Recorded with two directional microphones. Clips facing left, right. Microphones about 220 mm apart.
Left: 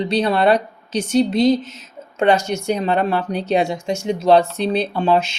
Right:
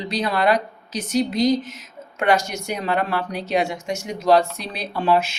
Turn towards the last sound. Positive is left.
turn(degrees=25)  # may be behind; listen again after turning